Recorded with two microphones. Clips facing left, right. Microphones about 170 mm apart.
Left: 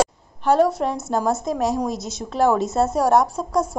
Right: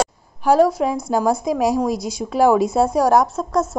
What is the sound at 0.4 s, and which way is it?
A woman's voice, 5° right (ahead or behind).